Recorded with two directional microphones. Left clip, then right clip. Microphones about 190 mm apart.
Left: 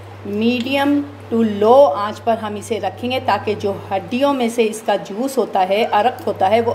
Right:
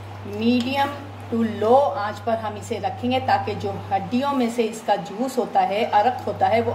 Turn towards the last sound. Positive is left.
turn(degrees=35)  # may be behind; listen again after turning